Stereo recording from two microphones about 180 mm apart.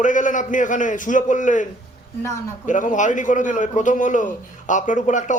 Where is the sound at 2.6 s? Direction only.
45° left (ahead or behind).